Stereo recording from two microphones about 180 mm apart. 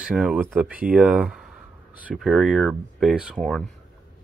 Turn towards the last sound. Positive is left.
turn(degrees=5)  # may be behind; listen again after turning